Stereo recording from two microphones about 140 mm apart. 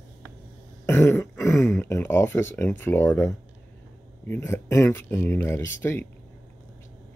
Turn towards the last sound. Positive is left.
turn(degrees=20)  # may be behind; listen again after turning